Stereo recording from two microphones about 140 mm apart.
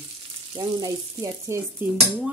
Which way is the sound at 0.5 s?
25° right (ahead or behind).